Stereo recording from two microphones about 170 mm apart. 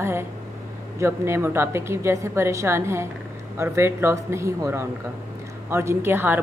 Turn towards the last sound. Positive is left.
turn(degrees=-10)  # may be behind; listen again after turning